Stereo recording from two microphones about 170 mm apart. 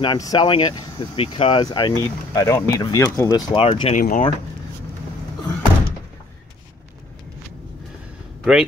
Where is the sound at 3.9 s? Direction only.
50° left (ahead or behind).